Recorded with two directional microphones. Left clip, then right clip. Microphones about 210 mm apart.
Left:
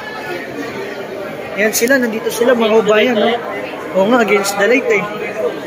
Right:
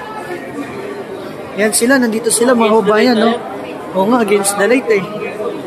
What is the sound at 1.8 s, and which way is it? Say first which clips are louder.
Speech: right 2 dB; 15° right (ahead or behind).